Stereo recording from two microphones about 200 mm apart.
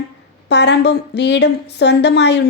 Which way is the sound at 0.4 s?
60° left (ahead or behind).